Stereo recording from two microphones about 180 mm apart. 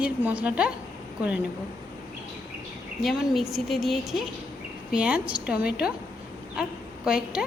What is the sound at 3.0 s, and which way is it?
A woman's voice, centre (ahead or behind).